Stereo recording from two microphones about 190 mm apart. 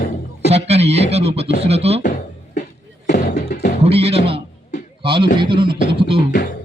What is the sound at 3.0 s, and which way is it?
Music, 60° left (ahead or behind).